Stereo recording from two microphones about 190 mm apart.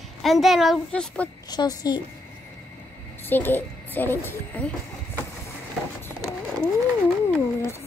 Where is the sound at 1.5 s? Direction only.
20° left (ahead or behind).